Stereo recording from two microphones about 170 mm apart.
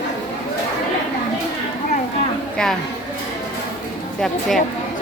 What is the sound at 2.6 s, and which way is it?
Speech, 5° left (ahead or behind).